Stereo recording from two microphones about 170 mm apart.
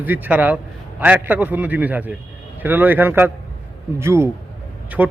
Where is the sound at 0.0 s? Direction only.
10° right (ahead or behind).